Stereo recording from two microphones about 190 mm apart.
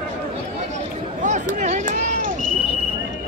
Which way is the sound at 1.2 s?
40° right (ahead or behind).